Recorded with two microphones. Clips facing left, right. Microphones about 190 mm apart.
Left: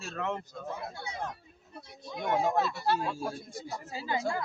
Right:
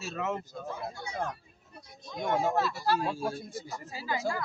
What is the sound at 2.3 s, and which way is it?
Speech, 15° left (ahead or behind).